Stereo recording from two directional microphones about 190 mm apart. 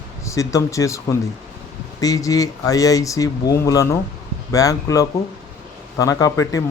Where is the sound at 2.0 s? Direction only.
20° left (ahead or behind).